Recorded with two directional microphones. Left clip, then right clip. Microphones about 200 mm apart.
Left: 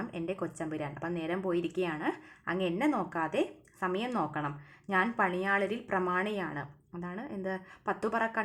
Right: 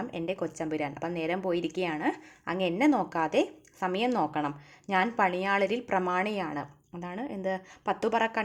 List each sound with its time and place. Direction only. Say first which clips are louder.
0.2 s speech: right 3 dB; 30° right (ahead or behind)